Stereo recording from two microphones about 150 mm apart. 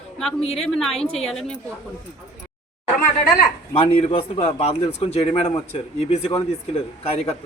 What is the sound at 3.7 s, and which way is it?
A man's voice, 45° left (ahead or behind).